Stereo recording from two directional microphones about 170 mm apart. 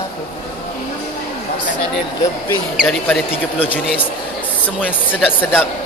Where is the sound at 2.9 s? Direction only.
10° left (ahead or behind).